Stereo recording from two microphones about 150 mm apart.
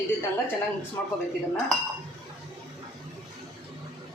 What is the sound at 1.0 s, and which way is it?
Speech, 15° left (ahead or behind).